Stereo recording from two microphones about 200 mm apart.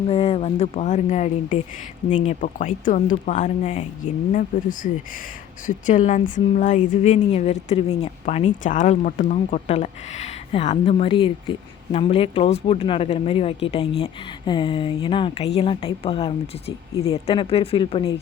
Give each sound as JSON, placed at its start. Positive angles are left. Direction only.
{"t": 0.1, "sound": "a woman's voice", "side_deg": 30}